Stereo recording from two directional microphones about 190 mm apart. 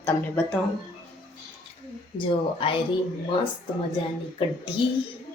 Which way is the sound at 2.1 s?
25° left (ahead or behind).